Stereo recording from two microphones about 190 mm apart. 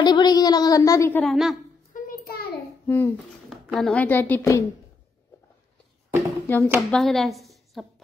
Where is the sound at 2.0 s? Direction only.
50° left (ahead or behind).